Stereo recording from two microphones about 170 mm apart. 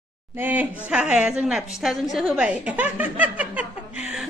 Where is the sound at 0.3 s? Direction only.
10° right (ahead or behind).